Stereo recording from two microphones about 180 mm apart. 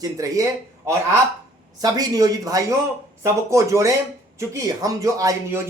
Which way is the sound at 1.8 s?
20° right (ahead or behind).